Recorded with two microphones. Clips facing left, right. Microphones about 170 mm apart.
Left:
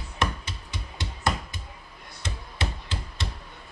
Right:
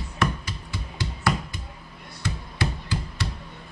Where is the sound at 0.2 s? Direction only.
20° left (ahead or behind).